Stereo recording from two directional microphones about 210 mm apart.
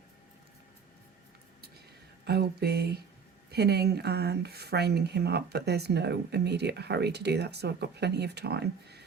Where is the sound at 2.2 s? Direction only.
50° right (ahead or behind).